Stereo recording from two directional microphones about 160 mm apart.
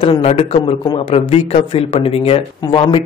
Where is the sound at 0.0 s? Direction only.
35° left (ahead or behind).